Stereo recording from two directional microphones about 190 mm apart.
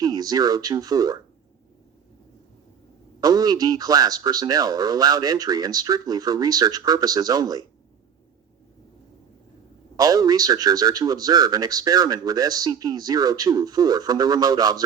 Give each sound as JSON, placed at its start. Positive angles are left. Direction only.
{"t": 0.0, "sound": "speech", "side_deg": -20}
{"t": 3.2, "sound": "speech", "side_deg": -20}
{"t": 10.0, "sound": "speech", "side_deg": -20}